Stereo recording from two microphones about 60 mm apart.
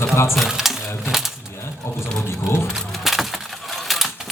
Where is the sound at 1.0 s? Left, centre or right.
Centre.